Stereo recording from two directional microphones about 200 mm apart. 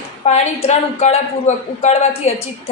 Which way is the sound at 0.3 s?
35° left (ahead or behind).